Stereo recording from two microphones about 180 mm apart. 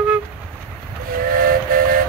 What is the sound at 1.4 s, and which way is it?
Music, 55° right (ahead or behind).